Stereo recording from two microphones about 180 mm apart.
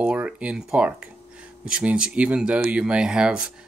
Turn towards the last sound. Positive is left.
turn(degrees=-5)  # may be behind; listen again after turning